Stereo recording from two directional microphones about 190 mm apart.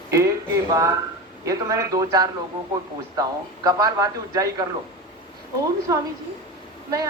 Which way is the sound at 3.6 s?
20° right (ahead or behind).